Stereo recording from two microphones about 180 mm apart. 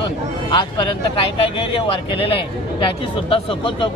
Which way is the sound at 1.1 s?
30° left (ahead or behind).